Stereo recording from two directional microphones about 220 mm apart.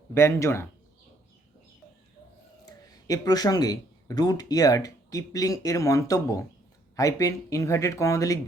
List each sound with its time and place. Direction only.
0.1 s speech: 10° left (ahead or behind)
2.6 s speech: 15° left (ahead or behind)